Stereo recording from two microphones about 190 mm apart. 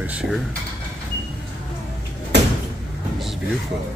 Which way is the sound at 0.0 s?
5° right (ahead or behind).